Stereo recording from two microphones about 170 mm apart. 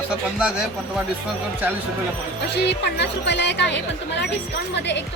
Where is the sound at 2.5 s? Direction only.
85° left.